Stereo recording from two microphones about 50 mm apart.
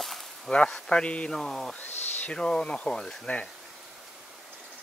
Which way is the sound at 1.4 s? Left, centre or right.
Centre.